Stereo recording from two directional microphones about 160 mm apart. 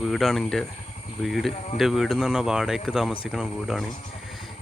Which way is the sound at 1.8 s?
Centre (ahead or behind).